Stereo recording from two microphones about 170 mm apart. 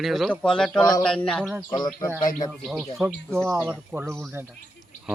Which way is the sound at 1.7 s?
25° left (ahead or behind).